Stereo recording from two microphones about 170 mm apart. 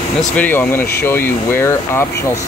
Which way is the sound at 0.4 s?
10° left (ahead or behind).